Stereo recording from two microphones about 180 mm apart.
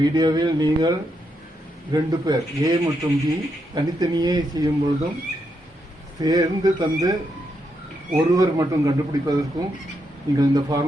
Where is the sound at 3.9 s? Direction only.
20° right (ahead or behind).